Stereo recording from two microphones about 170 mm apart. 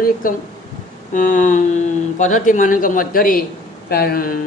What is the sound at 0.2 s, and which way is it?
Speech, 55° left (ahead or behind).